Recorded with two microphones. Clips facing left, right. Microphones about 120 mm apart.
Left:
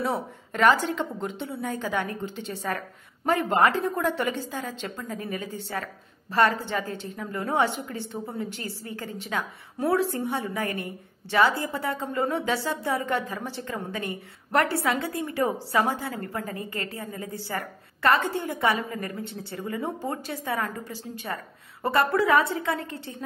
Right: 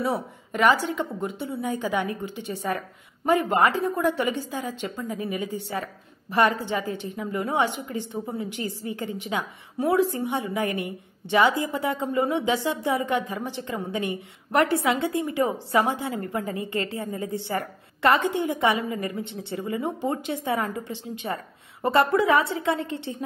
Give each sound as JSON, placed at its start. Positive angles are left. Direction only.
{"t": 0.5, "sound": "a woman's voice", "side_deg": -10}